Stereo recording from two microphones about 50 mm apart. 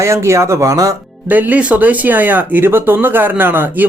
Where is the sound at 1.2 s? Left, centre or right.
Right.